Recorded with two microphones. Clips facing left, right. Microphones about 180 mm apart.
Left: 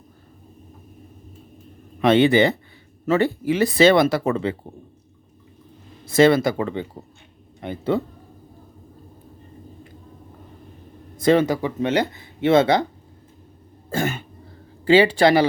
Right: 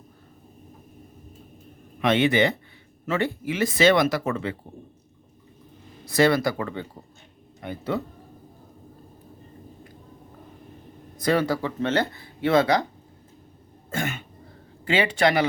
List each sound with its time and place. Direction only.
2.0 s speech: 35° left (ahead or behind)
6.1 s speech: 25° left (ahead or behind)
11.2 s speech: 20° left (ahead or behind)
13.9 s speech: 35° left (ahead or behind)